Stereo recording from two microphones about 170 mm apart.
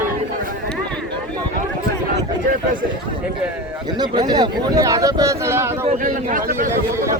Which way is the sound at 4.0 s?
25° right (ahead or behind).